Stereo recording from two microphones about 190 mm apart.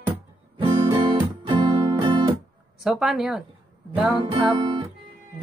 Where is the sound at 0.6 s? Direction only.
25° right (ahead or behind).